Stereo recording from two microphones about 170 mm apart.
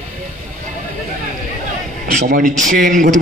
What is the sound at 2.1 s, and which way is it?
Speech, 55° right (ahead or behind).